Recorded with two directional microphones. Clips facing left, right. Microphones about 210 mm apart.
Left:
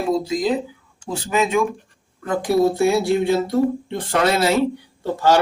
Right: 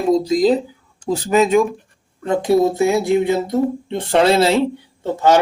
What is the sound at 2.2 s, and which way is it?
A man's voice, 25° right (ahead or behind).